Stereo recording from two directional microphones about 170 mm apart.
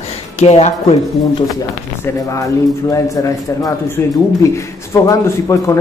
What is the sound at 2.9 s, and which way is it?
A man's voice, 20° left (ahead or behind).